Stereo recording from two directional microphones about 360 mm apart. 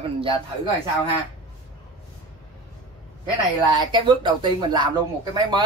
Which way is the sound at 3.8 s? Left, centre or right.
Centre.